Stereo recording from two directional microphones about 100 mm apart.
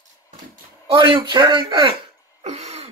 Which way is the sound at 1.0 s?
60° right (ahead or behind).